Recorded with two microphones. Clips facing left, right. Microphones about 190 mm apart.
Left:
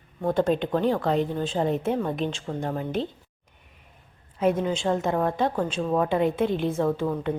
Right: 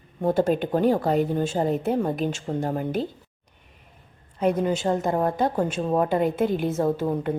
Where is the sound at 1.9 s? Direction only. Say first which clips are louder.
Right 2 dB; 30° right (ahead or behind).